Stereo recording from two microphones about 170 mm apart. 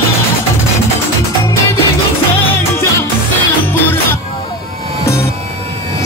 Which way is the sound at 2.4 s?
15° left (ahead or behind).